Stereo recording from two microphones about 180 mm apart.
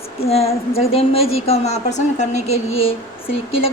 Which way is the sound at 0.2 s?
35° left (ahead or behind).